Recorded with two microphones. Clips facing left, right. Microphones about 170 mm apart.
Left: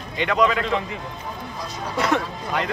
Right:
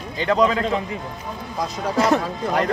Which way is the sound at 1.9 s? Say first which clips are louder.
Right 3 dB; 35° right (ahead or behind).